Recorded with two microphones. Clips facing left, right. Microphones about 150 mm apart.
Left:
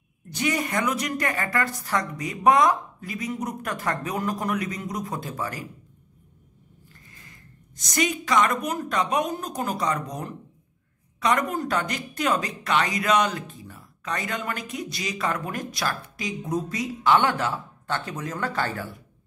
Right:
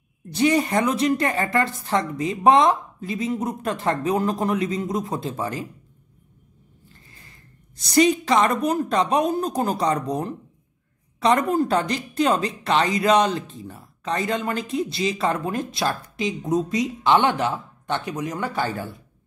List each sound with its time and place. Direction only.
0.3 s speech: 30° right (ahead or behind)
7.1 s a woman's voice: 30° right (ahead or behind)